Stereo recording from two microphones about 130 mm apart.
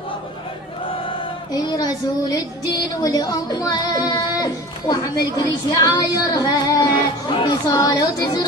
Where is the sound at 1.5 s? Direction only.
30° left (ahead or behind).